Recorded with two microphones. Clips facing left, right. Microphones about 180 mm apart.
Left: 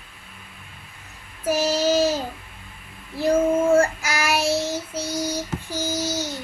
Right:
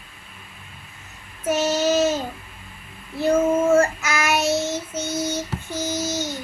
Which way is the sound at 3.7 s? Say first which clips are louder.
Right 1 dB; 30° left (ahead or behind).